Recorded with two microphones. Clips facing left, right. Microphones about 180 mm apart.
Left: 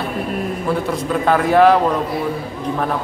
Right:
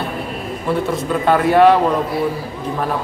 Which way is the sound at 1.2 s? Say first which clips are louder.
Right 1 dB; centre (ahead or behind).